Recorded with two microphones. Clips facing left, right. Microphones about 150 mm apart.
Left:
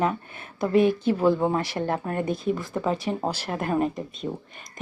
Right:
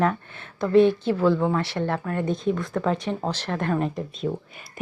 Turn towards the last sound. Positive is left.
turn(degrees=5)  # may be behind; listen again after turning